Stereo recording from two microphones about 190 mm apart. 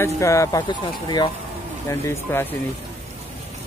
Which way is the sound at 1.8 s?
15° left (ahead or behind).